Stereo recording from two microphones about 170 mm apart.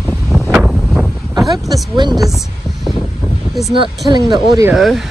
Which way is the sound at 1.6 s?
Centre (ahead or behind).